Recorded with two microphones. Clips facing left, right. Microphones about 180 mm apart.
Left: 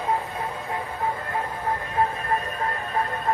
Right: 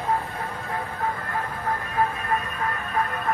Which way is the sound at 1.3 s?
25° left (ahead or behind).